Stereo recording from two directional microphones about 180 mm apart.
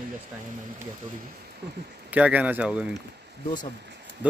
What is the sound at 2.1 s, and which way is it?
Speech, 10° right (ahead or behind).